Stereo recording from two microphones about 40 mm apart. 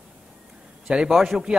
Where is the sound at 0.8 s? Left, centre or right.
Right.